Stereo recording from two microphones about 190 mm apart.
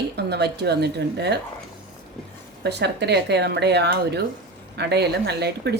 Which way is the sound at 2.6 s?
60° right (ahead or behind).